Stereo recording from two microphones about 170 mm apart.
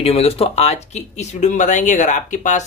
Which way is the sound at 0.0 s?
35° left (ahead or behind).